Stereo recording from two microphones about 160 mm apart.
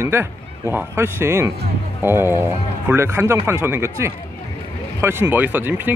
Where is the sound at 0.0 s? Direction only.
15° right (ahead or behind).